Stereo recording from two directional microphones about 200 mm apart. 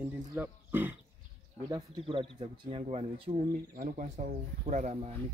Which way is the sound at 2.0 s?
25° right (ahead or behind).